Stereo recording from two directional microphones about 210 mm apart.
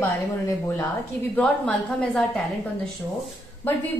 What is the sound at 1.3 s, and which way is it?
A woman's voice, 5° left (ahead or behind).